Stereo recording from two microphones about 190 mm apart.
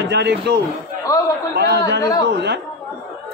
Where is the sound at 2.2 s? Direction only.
60° right (ahead or behind).